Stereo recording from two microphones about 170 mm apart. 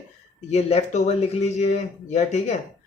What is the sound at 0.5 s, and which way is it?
Speech, 40° left (ahead or behind).